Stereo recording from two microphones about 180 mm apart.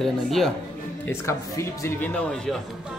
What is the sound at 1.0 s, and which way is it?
Speech, 15° left (ahead or behind).